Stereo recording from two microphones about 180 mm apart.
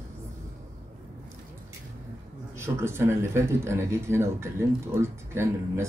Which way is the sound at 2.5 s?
15° right (ahead or behind).